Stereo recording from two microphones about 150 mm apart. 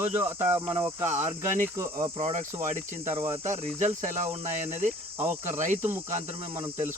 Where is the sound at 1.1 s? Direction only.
50° right (ahead or behind).